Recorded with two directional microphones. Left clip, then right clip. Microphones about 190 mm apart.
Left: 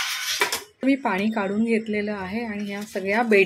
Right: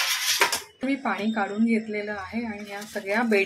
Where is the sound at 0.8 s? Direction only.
50° left (ahead or behind).